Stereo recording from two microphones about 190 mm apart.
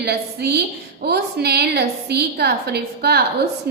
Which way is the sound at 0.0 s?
60° right (ahead or behind).